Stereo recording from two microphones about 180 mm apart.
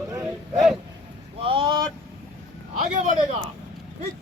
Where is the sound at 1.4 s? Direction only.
30° right (ahead or behind).